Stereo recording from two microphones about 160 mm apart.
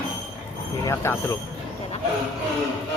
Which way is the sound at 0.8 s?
20° left (ahead or behind).